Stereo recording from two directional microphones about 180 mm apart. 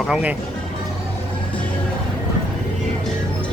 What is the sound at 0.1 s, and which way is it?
Speech, 10° right (ahead or behind).